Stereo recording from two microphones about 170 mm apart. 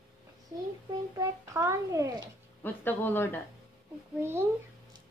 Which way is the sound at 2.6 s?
10° left (ahead or behind).